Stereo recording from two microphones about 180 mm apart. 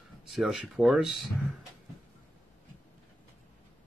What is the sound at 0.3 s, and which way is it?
Speech, centre (ahead or behind).